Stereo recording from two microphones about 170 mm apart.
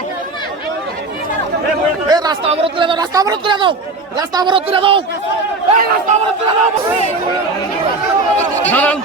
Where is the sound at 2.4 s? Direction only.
30° right (ahead or behind).